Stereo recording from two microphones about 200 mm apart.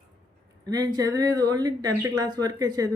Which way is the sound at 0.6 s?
20° right (ahead or behind).